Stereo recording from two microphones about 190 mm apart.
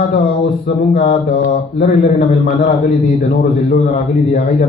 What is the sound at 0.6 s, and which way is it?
A man's voice, 45° left (ahead or behind).